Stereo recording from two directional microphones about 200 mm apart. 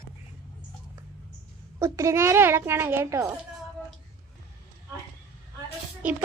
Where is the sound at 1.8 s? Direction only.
15° right (ahead or behind).